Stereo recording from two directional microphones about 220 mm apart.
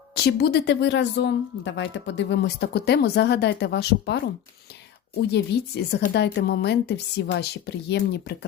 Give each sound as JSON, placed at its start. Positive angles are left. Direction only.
{"t": 0.1, "sound": "speech", "side_deg": 45}
{"t": 5.3, "sound": "speech", "side_deg": 45}